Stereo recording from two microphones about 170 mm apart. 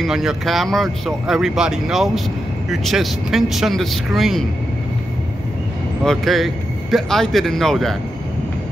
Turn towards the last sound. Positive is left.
turn(degrees=0)  # may be behind; listen again after turning